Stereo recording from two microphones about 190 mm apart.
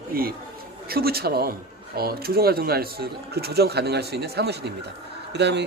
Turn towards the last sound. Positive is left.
turn(degrees=-65)  # may be behind; listen again after turning